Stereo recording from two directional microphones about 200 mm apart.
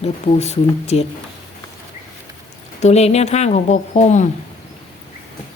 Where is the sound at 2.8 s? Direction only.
35° left (ahead or behind).